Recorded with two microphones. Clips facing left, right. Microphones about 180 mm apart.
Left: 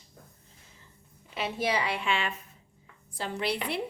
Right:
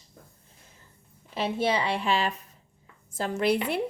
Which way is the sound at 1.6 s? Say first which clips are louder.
Right 2 dB; 30° right (ahead or behind).